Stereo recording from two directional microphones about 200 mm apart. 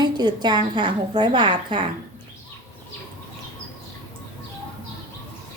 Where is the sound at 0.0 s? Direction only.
20° right (ahead or behind).